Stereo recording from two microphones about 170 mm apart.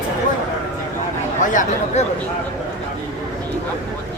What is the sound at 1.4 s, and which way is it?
Chatter, 50° left (ahead or behind).